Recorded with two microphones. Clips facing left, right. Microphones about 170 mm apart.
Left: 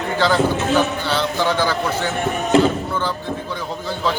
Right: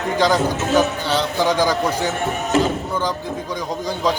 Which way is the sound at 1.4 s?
15° right (ahead or behind).